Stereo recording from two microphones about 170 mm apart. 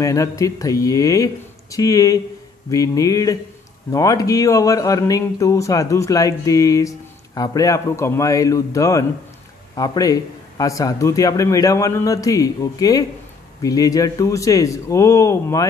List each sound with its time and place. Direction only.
0.0 s speech: 20° left (ahead or behind)